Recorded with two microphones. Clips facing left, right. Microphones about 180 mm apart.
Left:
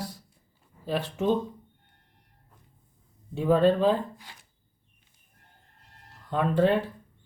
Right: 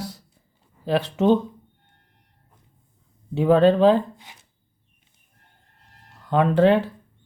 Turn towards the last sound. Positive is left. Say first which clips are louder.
# right 6 dB
turn(degrees=-75)  # may be behind; listen again after turning